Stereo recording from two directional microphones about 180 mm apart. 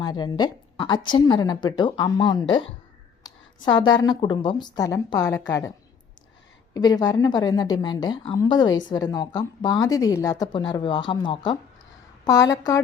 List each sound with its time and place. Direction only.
0.0 s a woman's voice: 25° left (ahead or behind)
6.7 s a woman's voice: 20° left (ahead or behind)